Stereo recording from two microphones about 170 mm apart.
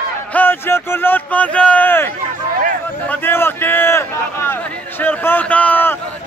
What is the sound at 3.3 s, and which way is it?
Speech, 15° left (ahead or behind).